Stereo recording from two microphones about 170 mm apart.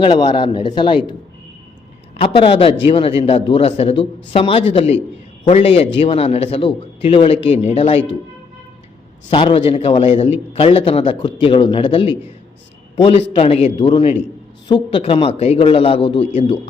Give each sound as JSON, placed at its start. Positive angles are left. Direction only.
{"t": 0.0, "sound": "a man's voice", "side_deg": 30}
{"t": 2.1, "sound": "a man's voice", "side_deg": 35}
{"t": 9.3, "sound": "a man's voice", "side_deg": 30}
{"t": 13.3, "sound": "a man's voice", "side_deg": 40}